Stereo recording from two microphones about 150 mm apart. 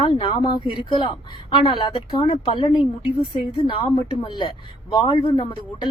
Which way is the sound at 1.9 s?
40° left (ahead or behind).